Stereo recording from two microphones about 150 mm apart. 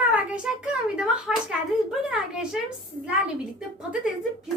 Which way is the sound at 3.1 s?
5° right (ahead or behind).